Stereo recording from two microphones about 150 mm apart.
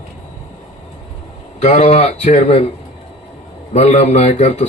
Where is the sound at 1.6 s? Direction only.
55° left (ahead or behind).